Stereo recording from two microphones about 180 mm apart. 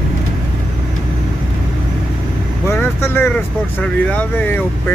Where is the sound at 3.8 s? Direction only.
10° left (ahead or behind).